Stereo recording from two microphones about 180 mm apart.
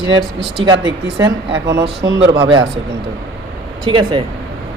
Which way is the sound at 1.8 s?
25° right (ahead or behind).